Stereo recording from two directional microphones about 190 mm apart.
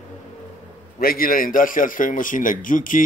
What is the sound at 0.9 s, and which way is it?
Speech, 50° left (ahead or behind).